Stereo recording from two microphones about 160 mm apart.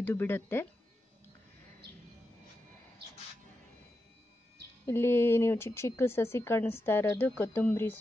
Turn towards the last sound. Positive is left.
turn(degrees=10)  # may be behind; listen again after turning